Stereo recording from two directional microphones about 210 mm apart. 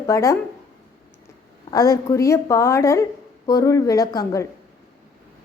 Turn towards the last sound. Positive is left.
turn(degrees=15)  # may be behind; listen again after turning